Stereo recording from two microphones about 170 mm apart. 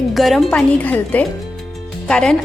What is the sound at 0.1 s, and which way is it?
A woman's voice, centre (ahead or behind).